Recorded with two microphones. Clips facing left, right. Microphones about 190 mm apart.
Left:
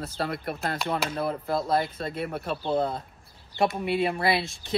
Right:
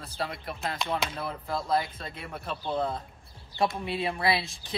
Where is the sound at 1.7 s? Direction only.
50° left (ahead or behind).